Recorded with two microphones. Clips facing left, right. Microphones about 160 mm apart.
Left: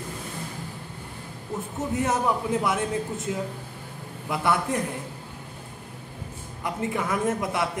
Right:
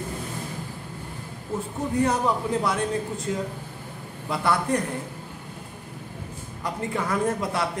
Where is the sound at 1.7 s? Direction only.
20° left (ahead or behind).